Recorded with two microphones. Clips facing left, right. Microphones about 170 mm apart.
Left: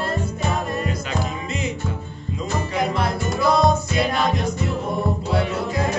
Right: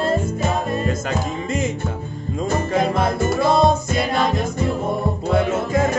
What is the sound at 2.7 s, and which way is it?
Music, 25° right (ahead or behind).